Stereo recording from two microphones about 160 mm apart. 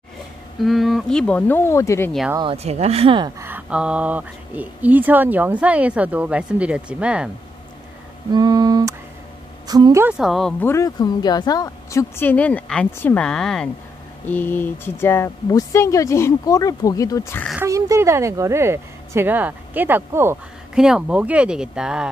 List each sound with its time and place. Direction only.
0.6 s speech: centre (ahead or behind); by 2.1 s 15° left (ahead or behind)
2.4 s speech: 40° right (ahead or behind)
3.3 s speech: 10° right (ahead or behind)
8.3 s a sound: 25° right (ahead or behind)
9.7 s a woman's voice: 25° right (ahead or behind)
10.0 s speech: 5° right (ahead or behind)
10.6 s speech: 20° left (ahead or behind)
17.6 s speech: 20° right (ahead or behind)
20.7 s speech: 5° right (ahead or behind)